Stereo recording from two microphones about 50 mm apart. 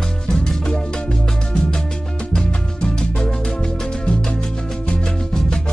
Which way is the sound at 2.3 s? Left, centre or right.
Centre.